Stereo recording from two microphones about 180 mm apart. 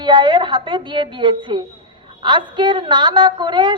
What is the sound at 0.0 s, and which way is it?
A woman's voice, 25° right (ahead or behind).